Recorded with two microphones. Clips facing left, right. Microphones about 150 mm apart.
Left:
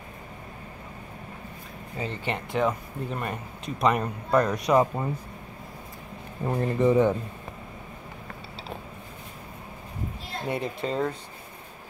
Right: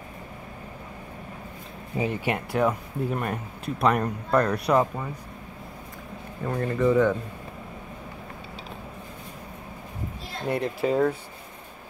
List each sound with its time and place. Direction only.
2.0 s speech: 10° right (ahead or behind); by 4.8 s 5° left (ahead or behind)
6.4 s speech: 25° left (ahead or behind)
10.4 s speech: centre (ahead or behind)